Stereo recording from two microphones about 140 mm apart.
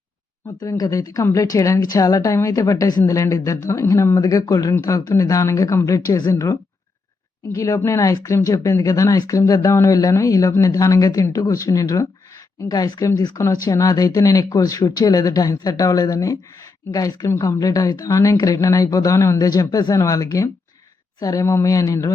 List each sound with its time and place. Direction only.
0.6 s speech: 25° left (ahead or behind)